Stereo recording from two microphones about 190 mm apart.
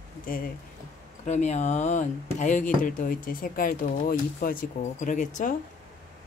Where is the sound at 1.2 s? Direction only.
40° left (ahead or behind).